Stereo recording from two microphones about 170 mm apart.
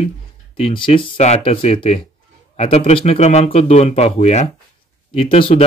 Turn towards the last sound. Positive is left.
turn(degrees=30)  # may be behind; listen again after turning